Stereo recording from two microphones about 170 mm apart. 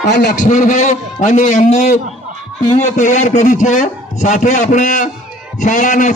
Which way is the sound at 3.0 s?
45° left (ahead or behind).